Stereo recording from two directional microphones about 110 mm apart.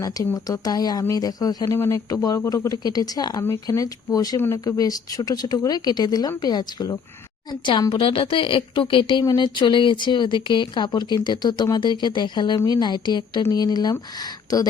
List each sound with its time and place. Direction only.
0.3 s speech: 35° left (ahead or behind)
4.4 s speech: 20° left (ahead or behind)
4.6 s speech: 35° left (ahead or behind)
7.6 s a woman's voice: 45° left (ahead or behind)
9.2 s speech: 40° left (ahead or behind)